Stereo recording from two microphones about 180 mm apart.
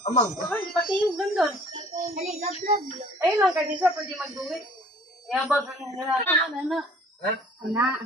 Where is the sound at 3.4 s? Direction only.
Centre (ahead or behind).